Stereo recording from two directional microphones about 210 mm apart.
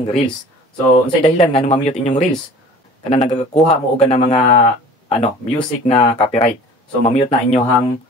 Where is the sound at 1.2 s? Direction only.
30° left (ahead or behind).